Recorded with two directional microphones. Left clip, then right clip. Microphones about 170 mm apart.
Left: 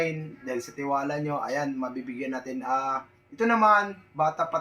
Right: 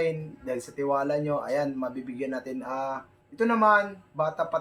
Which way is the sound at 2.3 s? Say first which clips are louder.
Left 4 dB; 30° right (ahead or behind).